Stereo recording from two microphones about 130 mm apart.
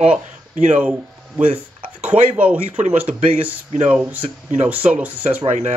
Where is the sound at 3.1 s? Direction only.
65° right (ahead or behind).